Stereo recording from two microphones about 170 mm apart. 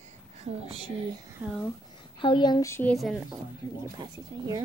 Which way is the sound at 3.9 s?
25° right (ahead or behind).